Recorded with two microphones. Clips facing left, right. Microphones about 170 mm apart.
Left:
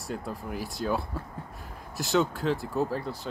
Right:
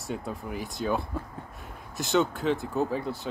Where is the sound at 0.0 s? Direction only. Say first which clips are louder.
Right 1 dB; centre (ahead or behind).